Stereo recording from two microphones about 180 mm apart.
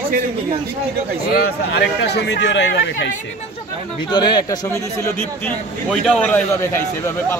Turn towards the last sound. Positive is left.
turn(degrees=10)  # may be behind; listen again after turning